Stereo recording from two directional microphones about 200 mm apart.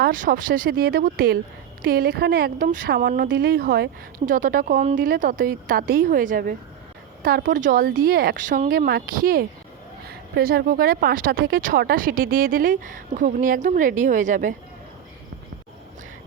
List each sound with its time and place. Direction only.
0.0 s speech: 45° right (ahead or behind)
4.3 s speech: 40° right (ahead or behind)
8.9 s speech: 50° right (ahead or behind)